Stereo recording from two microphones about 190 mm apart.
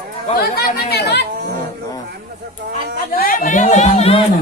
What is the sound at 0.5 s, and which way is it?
Speech, 60° left (ahead or behind).